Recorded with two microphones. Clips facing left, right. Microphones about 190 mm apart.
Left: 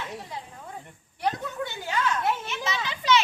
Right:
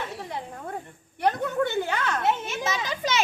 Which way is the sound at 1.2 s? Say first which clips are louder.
Right 5 dB; 60° right (ahead or behind).